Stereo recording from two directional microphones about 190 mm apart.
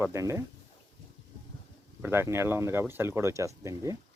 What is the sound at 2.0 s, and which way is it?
Speech, 10° right (ahead or behind).